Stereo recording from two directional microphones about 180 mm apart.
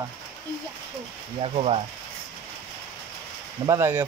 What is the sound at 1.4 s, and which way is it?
Speech, 35° right (ahead or behind).